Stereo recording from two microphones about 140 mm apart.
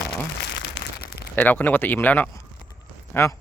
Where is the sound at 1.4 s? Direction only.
10° left (ahead or behind).